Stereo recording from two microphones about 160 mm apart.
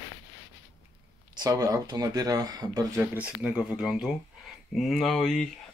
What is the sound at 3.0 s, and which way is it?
Speech, 10° right (ahead or behind).